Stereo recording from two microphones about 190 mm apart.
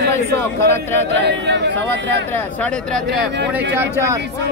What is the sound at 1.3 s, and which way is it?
Speech, 65° right (ahead or behind).